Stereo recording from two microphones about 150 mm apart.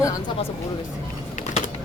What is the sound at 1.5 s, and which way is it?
Typing, 55° left (ahead or behind).